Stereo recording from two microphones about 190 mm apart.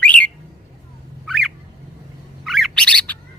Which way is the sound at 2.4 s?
Centre (ahead or behind).